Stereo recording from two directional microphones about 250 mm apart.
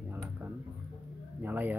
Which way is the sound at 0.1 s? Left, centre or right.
Centre.